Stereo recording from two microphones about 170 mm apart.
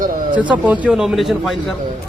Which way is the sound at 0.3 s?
10° right (ahead or behind).